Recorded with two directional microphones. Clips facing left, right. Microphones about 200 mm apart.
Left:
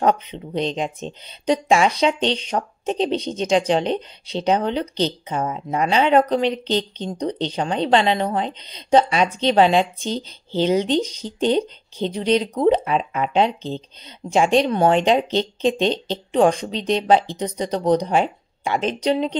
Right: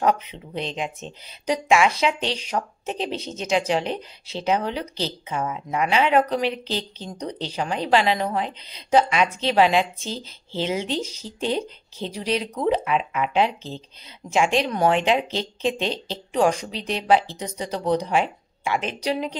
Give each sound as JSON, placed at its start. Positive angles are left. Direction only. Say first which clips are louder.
{"t": 0.0, "sound": "speech", "louder": "left 3 dB", "side_deg": 30}
{"t": 10.0, "sound": "speech", "louder": "left 6 dB", "side_deg": -5}
{"t": 10.6, "sound": "speech", "louder": "left 7 dB", "side_deg": 35}